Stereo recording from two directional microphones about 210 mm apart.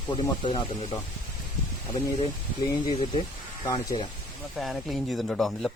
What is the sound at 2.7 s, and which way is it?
Speech, 20° left (ahead or behind).